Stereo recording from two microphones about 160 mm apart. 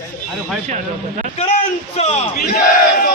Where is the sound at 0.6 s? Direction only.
50° right (ahead or behind).